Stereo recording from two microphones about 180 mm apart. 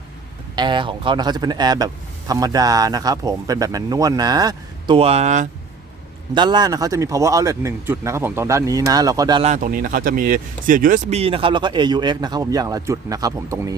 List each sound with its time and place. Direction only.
0.5 s speech: 25° right (ahead or behind)
6.3 s speech: 25° right (ahead or behind)
9.4 s speech: 45° right (ahead or behind); by 13.7 s 15° right (ahead or behind)